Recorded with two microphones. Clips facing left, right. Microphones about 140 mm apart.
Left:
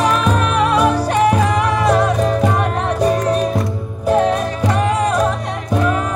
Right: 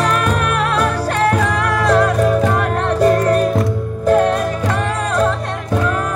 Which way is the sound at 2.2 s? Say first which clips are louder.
Right 1 dB; 15° left (ahead or behind).